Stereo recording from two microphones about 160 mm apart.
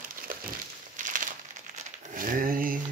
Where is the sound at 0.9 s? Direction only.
55° right (ahead or behind).